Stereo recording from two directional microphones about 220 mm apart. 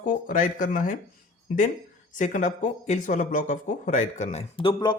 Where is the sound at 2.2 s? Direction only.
35° left (ahead or behind).